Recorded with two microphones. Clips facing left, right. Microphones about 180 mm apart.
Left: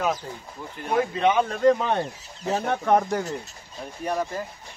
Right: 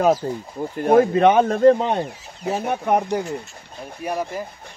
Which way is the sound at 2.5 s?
10° right (ahead or behind).